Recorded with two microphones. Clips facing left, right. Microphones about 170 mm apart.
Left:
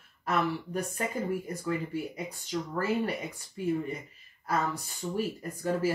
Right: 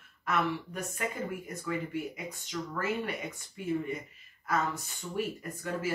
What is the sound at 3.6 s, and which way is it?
Speech, 35° left (ahead or behind).